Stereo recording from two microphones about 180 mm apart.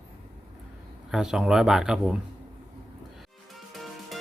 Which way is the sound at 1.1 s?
5° right (ahead or behind).